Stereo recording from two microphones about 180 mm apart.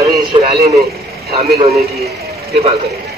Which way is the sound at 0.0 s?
20° right (ahead or behind).